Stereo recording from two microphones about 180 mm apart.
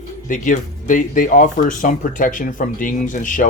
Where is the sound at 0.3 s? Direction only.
45° left (ahead or behind).